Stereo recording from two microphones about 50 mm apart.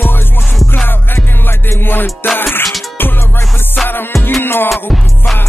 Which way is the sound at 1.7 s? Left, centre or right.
Left.